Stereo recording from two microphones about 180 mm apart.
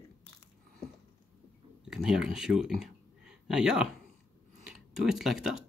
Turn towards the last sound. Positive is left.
turn(degrees=0)  # may be behind; listen again after turning